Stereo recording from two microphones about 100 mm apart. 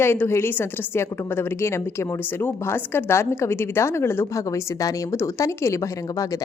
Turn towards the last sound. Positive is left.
turn(degrees=30)  # may be behind; listen again after turning